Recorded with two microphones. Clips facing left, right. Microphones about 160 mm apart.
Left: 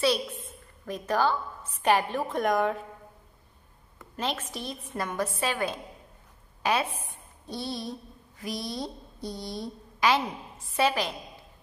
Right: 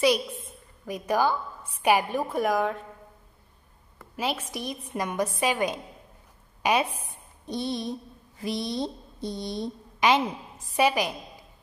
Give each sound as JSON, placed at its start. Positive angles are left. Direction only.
{"t": 0.8, "sound": "a woman's voice", "side_deg": -10}
{"t": 4.2, "sound": "a woman's voice", "side_deg": -10}
{"t": 7.4, "sound": "a sound", "side_deg": -20}
{"t": 8.4, "sound": "a woman's voice", "side_deg": -25}